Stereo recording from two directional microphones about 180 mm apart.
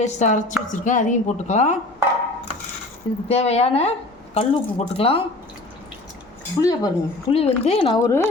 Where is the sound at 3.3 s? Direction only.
35° left (ahead or behind).